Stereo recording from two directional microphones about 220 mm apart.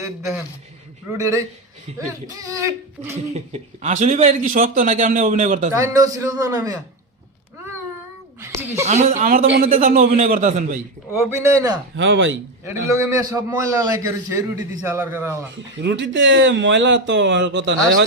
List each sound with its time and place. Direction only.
1.1 s a man's voice: 15° right (ahead or behind)
3.3 s a man's voice: 30° right (ahead or behind)
5.7 s a man's voice: 15° right (ahead or behind)
8.8 s a man's voice: 30° right (ahead or behind)
11.1 s a man's voice: 10° right (ahead or behind)
11.9 s speech: 60° right (ahead or behind)
12.6 s a man's voice: 15° right (ahead or behind)
15.5 s speech: 50° right (ahead or behind)